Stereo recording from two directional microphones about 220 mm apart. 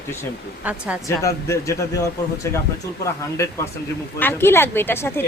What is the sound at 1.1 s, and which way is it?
Speech, 15° left (ahead or behind).